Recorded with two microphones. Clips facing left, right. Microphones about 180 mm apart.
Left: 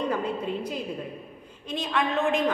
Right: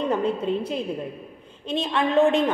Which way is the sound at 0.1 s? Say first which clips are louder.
Right 5 dB; 25° right (ahead or behind).